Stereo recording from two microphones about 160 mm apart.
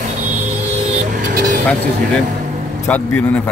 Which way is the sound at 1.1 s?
90° right.